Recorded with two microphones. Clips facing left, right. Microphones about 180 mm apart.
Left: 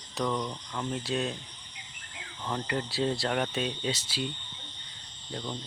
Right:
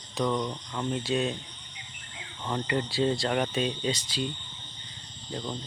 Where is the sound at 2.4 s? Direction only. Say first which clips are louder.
Right 3 dB; centre (ahead or behind).